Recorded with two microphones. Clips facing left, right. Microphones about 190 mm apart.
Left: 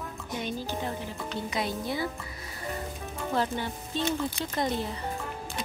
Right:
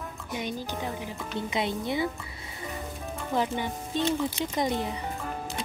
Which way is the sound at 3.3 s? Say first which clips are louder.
Right 1 dB; 15° right (ahead or behind).